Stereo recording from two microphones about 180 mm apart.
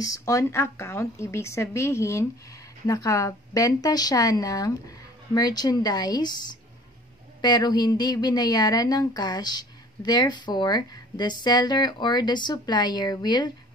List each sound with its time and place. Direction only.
0.0 s a woman's voice: 20° left (ahead or behind)
7.4 s a woman's voice: 25° left (ahead or behind)